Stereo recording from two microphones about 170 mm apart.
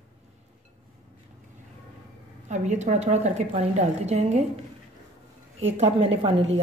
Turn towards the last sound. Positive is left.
turn(degrees=-35)  # may be behind; listen again after turning